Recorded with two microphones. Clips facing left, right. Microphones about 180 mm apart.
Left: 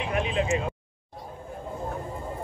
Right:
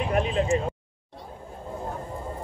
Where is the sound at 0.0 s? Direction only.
40° right (ahead or behind).